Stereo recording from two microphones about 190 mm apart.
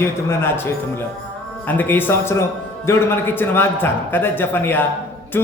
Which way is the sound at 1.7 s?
10° left (ahead or behind).